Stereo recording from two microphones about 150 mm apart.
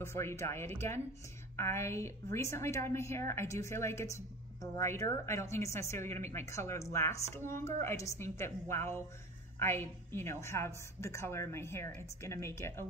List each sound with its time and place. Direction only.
0.0 s a woman's voice: 15° left (ahead or behind)